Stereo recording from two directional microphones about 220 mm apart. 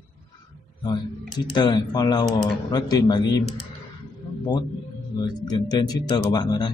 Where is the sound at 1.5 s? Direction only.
20° left (ahead or behind).